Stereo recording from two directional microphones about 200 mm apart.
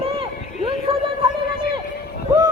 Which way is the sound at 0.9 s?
25° right (ahead or behind).